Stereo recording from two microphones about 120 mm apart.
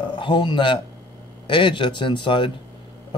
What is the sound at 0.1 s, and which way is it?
Speech, 40° left (ahead or behind).